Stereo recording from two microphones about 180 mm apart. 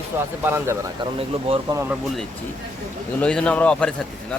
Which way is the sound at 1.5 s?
30° right (ahead or behind).